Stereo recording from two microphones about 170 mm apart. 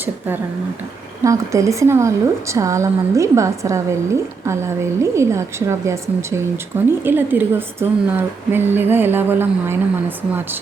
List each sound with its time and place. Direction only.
1.2 s a woman's voice: 20° right (ahead or behind)